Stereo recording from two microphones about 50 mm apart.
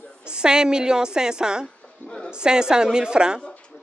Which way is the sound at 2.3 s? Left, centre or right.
Centre.